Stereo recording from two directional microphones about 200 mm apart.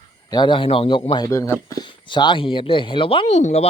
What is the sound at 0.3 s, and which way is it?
Speech, 20° left (ahead or behind).